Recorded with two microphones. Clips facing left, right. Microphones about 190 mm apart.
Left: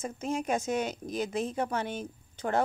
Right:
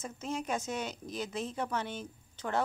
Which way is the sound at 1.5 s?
50° left (ahead or behind).